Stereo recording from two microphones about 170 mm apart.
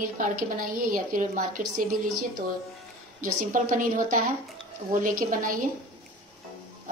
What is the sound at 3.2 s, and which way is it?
A woman's voice, 50° right (ahead or behind).